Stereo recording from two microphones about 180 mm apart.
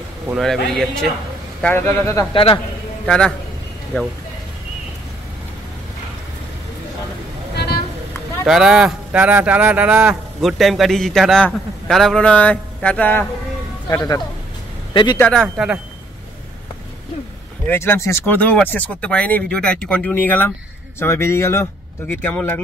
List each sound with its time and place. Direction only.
1.6 s speech: 10° left (ahead or behind)
2.3 s speech: 30° left (ahead or behind)
3.1 s speech: 5° left (ahead or behind)
7.5 s a sound: 60° left (ahead or behind)
8.5 s speech: 5° right (ahead or behind)
13.8 s speech: 20° left (ahead or behind)
15.1 s speech: 5° left (ahead or behind)
17.6 s speech: 15° left (ahead or behind)